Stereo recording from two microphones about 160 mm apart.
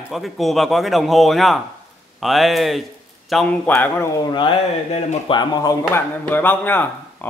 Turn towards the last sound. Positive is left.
turn(degrees=10)  # may be behind; listen again after turning